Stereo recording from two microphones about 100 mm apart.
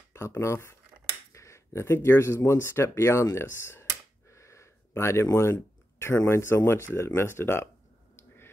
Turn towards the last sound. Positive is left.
turn(degrees=25)  # may be behind; listen again after turning